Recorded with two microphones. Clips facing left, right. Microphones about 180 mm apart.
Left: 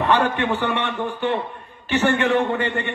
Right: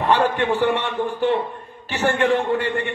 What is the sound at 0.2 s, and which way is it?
A man's voice, 65° left (ahead or behind).